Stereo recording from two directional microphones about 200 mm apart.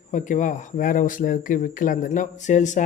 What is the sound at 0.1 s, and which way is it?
Speech, 40° left (ahead or behind).